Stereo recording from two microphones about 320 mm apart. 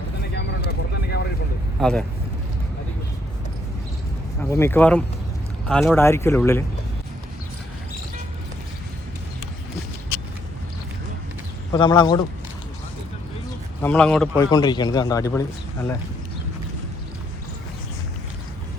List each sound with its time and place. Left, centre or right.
0.2 s vehicle: left
1.8 s speech: centre
4.4 s a man's voice: centre
11.7 s a man's voice: centre
13.8 s a man's voice: centre